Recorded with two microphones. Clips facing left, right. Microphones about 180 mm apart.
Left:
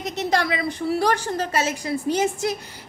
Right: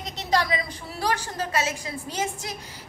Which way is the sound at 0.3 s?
55° left (ahead or behind).